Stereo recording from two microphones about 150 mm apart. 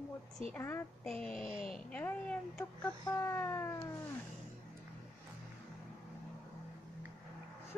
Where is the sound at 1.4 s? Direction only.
35° right (ahead or behind).